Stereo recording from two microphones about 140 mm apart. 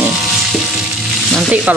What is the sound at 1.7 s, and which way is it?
Music, 10° right (ahead or behind).